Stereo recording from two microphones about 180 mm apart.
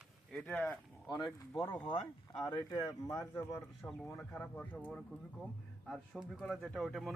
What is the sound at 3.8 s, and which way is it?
Speech, 5° left (ahead or behind).